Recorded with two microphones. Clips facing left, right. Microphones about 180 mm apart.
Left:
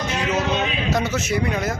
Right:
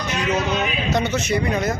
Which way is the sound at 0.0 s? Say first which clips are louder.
Even; 25° left (ahead or behind).